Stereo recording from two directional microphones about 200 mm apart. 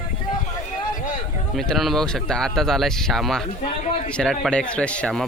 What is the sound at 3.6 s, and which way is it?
Speech, 35° left (ahead or behind).